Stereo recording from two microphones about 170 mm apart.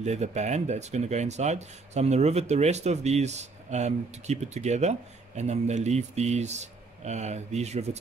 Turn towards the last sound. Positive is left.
turn(degrees=-40)  # may be behind; listen again after turning